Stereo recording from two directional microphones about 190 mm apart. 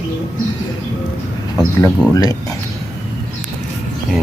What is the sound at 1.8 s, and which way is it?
Speech, 20° left (ahead or behind).